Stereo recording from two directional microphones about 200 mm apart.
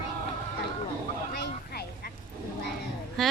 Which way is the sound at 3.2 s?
Centre (ahead or behind).